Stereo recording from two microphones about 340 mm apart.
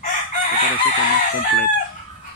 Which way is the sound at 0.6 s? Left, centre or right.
Left.